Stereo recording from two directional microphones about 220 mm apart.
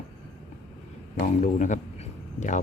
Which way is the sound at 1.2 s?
35° left (ahead or behind).